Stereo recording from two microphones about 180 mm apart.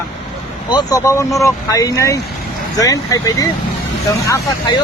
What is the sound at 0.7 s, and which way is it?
Speech, 20° left (ahead or behind).